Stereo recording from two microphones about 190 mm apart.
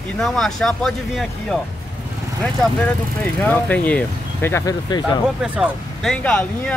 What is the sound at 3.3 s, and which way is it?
Speech, 10° left (ahead or behind).